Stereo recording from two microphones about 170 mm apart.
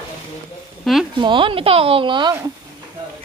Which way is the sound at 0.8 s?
Centre (ahead or behind).